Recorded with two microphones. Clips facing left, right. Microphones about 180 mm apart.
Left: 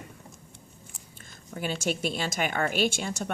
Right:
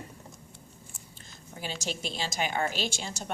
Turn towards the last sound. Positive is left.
turn(degrees=55)  # may be behind; listen again after turning